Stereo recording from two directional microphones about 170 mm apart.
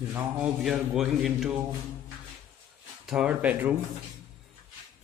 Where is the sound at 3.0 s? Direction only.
5° right (ahead or behind).